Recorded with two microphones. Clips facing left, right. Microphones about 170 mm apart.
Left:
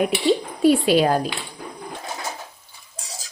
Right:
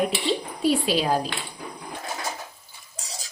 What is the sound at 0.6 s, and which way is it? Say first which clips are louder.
Speech: left 6 dB; 55° left (ahead or behind).